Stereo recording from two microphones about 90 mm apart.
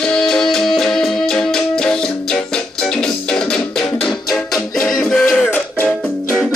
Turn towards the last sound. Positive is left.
turn(degrees=25)  # may be behind; listen again after turning